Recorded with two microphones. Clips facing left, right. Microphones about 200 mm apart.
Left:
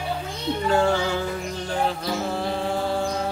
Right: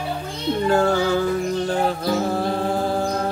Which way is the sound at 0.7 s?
40° right (ahead or behind).